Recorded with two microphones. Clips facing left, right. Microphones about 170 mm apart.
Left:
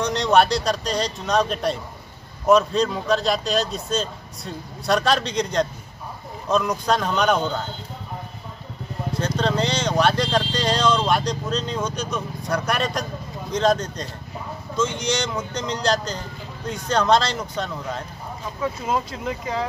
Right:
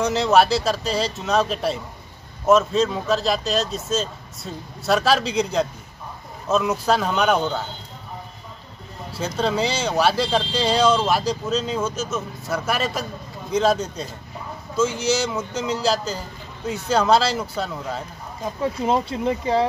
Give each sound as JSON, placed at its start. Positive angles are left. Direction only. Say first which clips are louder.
{"t": 0.0, "sound": "speech", "louder": "right 1 dB", "side_deg": -5}
{"t": 9.1, "sound": "speech", "louder": "even", "side_deg": -5}
{"t": 18.6, "sound": "speech", "louder": "right 3 dB", "side_deg": -30}